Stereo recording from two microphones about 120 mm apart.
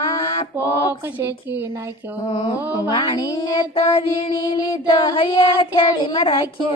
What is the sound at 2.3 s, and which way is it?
Music, 40° left (ahead or behind).